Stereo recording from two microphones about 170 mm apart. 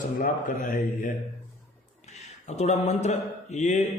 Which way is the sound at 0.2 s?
50° left (ahead or behind).